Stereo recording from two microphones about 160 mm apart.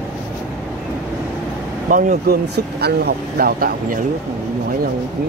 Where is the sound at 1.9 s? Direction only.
55° right (ahead or behind).